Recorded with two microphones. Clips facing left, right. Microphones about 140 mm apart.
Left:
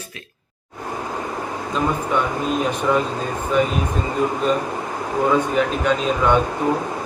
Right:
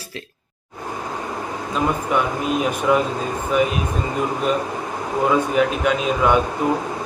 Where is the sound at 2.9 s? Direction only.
10° right (ahead or behind).